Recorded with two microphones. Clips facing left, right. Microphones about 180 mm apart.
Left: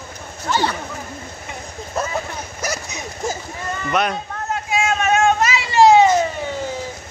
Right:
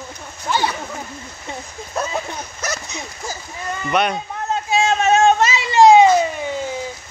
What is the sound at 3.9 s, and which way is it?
Speech, centre (ahead or behind).